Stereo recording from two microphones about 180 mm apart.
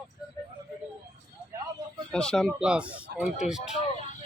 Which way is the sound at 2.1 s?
5° left (ahead or behind).